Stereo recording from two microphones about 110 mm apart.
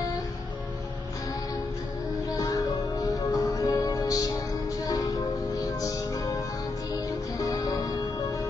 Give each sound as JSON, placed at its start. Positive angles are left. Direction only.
{"t": 2.2, "sound": "music", "side_deg": 35}